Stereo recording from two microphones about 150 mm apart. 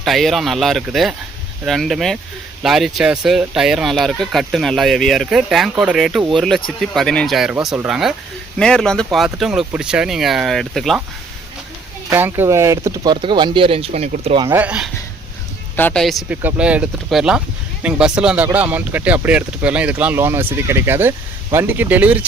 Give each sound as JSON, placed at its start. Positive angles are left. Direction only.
{"t": 0.0, "sound": "speech", "side_deg": 0}
{"t": 12.1, "sound": "speech", "side_deg": -15}
{"t": 14.4, "sound": "speech", "side_deg": -15}
{"t": 15.7, "sound": "speech", "side_deg": 10}
{"t": 16.3, "sound": "speech", "side_deg": -10}